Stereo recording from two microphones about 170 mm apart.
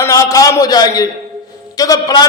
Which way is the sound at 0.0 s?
20° left (ahead or behind).